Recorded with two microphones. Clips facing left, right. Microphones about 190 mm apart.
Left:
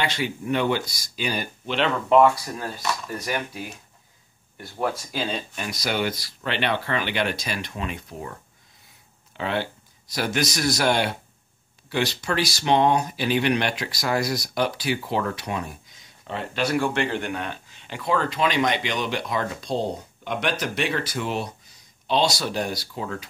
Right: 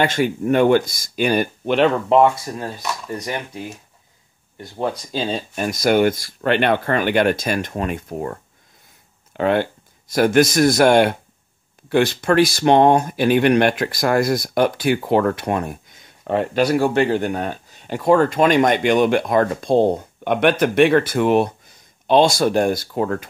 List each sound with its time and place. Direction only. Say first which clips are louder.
0.0 s speech: right 8 dB; 50° right (ahead or behind)
2.0 s speech: right 2 dB; 25° right (ahead or behind)
5.5 s speech: right 10 dB; 45° right (ahead or behind)
9.4 s speech: right 9 dB; 50° right (ahead or behind)